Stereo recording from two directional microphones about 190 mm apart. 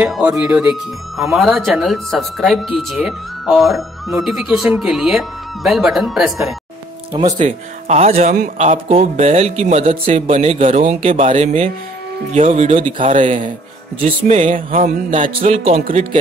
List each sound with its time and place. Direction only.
0.0 s speech: 5° right (ahead or behind)
7.3 s speech: 35° right (ahead or behind)